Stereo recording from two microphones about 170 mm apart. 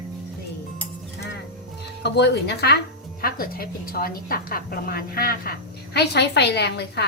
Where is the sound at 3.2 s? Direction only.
60° left (ahead or behind).